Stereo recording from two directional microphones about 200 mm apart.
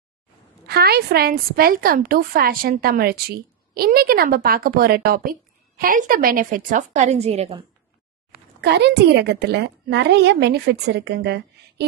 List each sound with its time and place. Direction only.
0.7 s a woman's voice: 50° right (ahead or behind); by 7.6 s 30° right (ahead or behind)
8.5 s a woman's voice: 55° right (ahead or behind)